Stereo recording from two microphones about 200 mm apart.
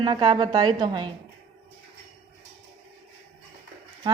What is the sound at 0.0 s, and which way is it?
Speech, 20° right (ahead or behind).